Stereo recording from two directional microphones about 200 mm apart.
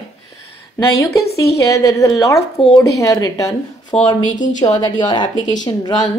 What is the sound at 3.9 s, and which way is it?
Speech, 30° left (ahead or behind).